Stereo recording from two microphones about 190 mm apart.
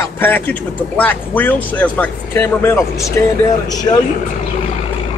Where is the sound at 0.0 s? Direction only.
10° left (ahead or behind).